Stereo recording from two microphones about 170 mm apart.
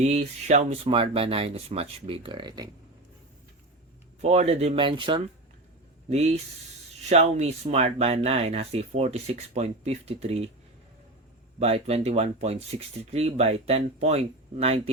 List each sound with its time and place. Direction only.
0.0 s speech: 40° right (ahead or behind); by 2.6 s 25° right (ahead or behind)
4.2 s speech: 40° right (ahead or behind)
6.1 s speech: 40° right (ahead or behind)
11.6 s speech: 40° right (ahead or behind)